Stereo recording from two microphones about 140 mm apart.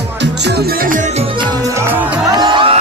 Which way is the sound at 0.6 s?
90° right.